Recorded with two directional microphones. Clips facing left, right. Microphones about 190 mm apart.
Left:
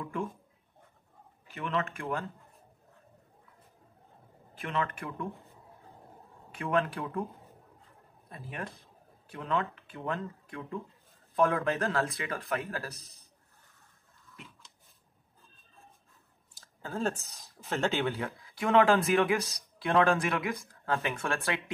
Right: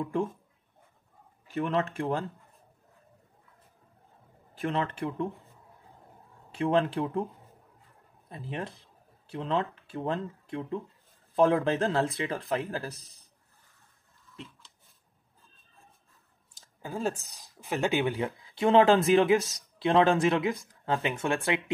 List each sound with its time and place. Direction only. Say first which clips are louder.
0.0 s speech: right 6 dB; 30° right (ahead or behind)
1.5 s speech: right 5 dB; 35° right (ahead or behind)
4.6 s speech: right 4 dB; 30° right (ahead or behind)
6.5 s speech: right 4 dB; 30° right (ahead or behind)
8.3 s speech: right 4 dB; 25° right (ahead or behind)
12.1 s speech: right 4 dB; 30° right (ahead or behind)
16.5 s a sound: even; 15° right (ahead or behind)
17.6 s speech: right 2 dB; 15° right (ahead or behind)
18.6 s speech: right 3 dB; 30° right (ahead or behind)